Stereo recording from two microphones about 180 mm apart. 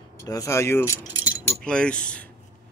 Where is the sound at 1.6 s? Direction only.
5° left (ahead or behind).